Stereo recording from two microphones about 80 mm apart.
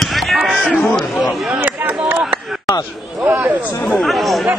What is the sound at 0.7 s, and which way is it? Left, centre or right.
Speech, centre.